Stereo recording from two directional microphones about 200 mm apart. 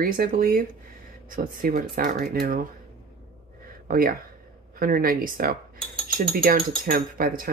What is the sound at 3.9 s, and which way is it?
Speech, 45° right (ahead or behind).